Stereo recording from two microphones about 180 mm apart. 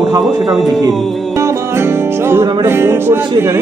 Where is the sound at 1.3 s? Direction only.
15° right (ahead or behind).